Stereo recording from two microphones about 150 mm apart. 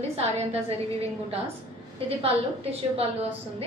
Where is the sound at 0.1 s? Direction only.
45° right (ahead or behind).